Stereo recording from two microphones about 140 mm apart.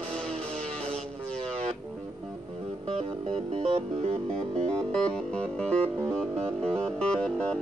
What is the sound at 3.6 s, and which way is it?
Music, 45° right (ahead or behind).